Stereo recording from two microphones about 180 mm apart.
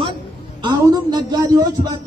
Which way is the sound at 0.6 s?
25° right (ahead or behind).